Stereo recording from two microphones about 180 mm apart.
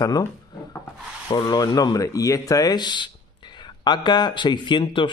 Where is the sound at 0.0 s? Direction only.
20° left (ahead or behind).